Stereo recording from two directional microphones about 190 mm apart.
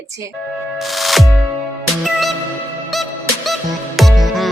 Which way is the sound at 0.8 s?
Centre (ahead or behind).